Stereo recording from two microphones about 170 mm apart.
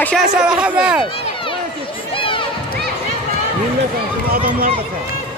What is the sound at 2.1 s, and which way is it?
Run, 30° left (ahead or behind).